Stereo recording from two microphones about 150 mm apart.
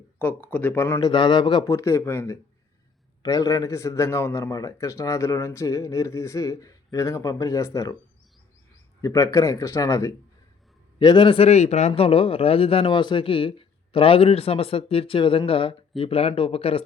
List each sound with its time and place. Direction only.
0.2 s speech: 10° left (ahead or behind)
0.9 s a man's voice: 30° left (ahead or behind)
1.7 s a man's voice: 20° left (ahead or behind)
9.0 s a man's voice: 20° left (ahead or behind)
11.0 s a man's voice: 30° left (ahead or behind)